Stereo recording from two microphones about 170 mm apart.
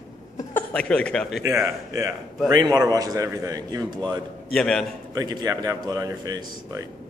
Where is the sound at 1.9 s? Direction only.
20° right (ahead or behind).